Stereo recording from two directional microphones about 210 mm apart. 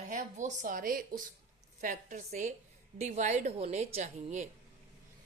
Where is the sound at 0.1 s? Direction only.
35° right (ahead or behind).